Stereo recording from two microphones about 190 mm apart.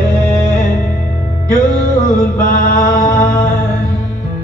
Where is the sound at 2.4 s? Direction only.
45° left (ahead or behind).